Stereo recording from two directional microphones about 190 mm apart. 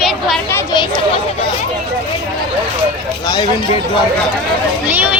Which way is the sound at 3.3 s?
25° left (ahead or behind).